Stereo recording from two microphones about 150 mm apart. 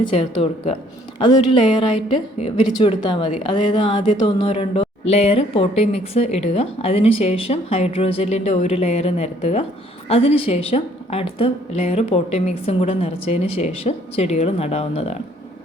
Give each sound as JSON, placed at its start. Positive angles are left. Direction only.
{"t": 0.0, "sound": "a woman's voice", "side_deg": 35}